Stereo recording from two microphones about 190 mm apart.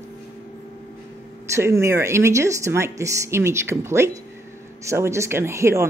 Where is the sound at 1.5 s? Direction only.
15° right (ahead or behind).